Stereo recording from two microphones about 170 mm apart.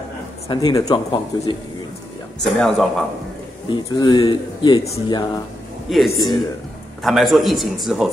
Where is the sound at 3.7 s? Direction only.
25° left (ahead or behind).